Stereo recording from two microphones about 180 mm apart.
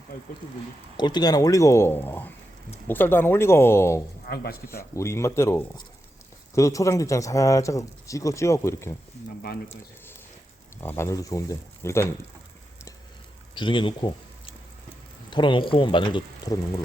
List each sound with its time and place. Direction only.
0.9 s speech: 25° left (ahead or behind)
4.3 s speech: 60° left (ahead or behind)
4.7 s speech: 15° left (ahead or behind)
10.8 s speech: 15° left (ahead or behind)
13.6 s speech: 30° left (ahead or behind)